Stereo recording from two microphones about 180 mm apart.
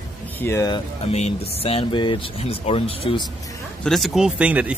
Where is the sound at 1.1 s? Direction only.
35° left (ahead or behind).